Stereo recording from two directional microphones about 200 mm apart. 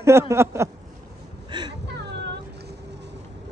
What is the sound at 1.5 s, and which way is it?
Whimper, 20° right (ahead or behind).